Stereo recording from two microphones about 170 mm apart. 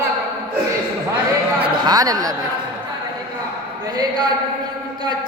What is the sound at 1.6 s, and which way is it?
Speech, 25° right (ahead or behind).